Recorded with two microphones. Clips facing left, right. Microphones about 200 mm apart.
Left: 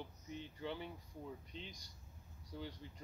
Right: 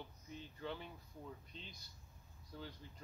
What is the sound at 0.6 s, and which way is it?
A man's voice, 15° left (ahead or behind).